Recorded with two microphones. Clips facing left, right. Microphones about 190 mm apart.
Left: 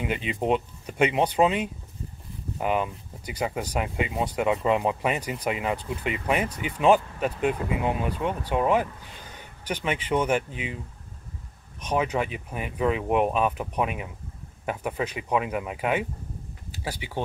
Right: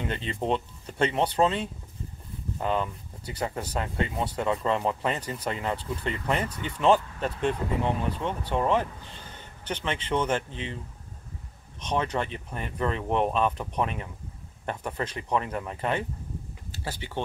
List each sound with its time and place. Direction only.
0.0 s speech: 10° left (ahead or behind)
11.8 s speech: 10° left (ahead or behind)